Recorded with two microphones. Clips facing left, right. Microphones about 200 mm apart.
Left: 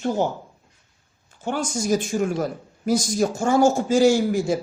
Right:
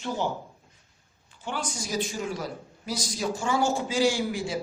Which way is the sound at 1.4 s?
45° left (ahead or behind).